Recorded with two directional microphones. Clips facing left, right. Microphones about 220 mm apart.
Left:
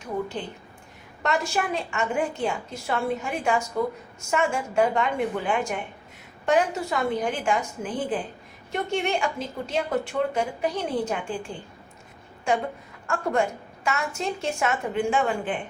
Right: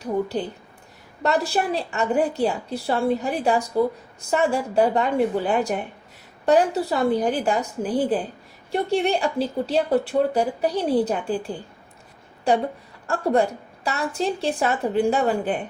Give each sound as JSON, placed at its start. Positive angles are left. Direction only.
{"t": 0.0, "sound": "a woman's voice", "side_deg": -35}